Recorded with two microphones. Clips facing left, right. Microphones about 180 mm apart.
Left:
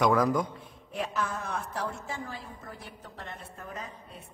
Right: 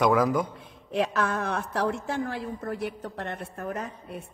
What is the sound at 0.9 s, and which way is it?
A woman's voice, 80° right.